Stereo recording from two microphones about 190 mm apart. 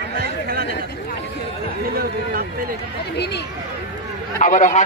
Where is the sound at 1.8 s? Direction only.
50° right (ahead or behind).